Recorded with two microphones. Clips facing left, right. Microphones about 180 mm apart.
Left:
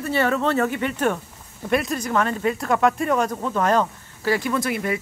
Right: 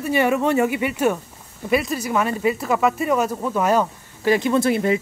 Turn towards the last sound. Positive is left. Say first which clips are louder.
# right 5 dB
turn(degrees=-30)  # may be behind; listen again after turning